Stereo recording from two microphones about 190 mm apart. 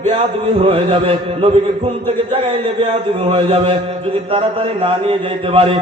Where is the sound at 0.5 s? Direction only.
30° right (ahead or behind).